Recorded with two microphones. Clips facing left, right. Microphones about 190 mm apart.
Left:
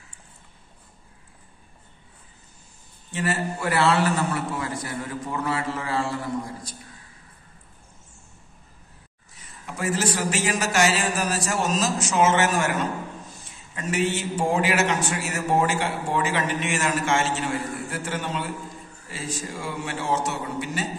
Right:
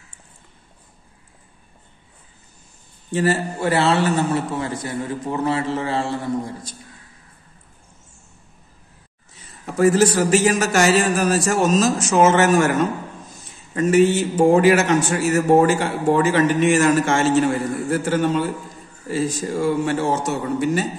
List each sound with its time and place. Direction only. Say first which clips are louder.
3.1 s a man's voice: right 7 dB; 35° right (ahead or behind)
9.7 s a man's voice: right 10 dB; 40° right (ahead or behind)